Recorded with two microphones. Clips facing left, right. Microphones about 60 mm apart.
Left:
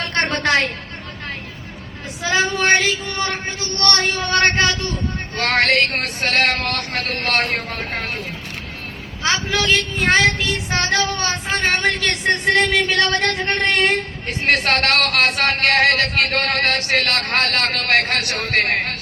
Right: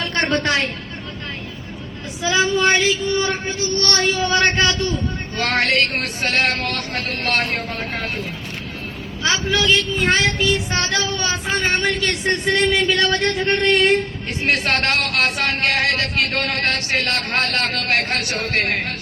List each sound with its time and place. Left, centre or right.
0.2 s a sound: left
0.4 s speech: left
2.2 s speech: left
9.2 s speech: left
14.8 s a man's voice: left
15.6 s a man's voice: left
18.5 s speech: left